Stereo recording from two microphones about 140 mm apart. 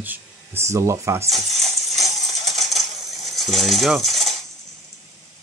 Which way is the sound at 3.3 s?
Centre (ahead or behind).